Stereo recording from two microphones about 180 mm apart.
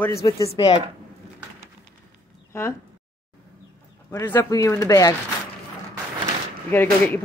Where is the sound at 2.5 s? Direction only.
15° left (ahead or behind).